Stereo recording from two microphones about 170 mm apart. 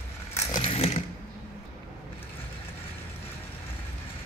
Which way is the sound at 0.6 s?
35° left (ahead or behind).